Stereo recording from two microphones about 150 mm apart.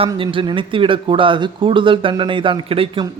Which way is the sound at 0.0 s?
35° right (ahead or behind).